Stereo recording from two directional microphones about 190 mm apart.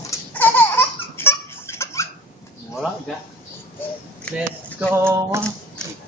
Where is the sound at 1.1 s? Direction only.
15° left (ahead or behind).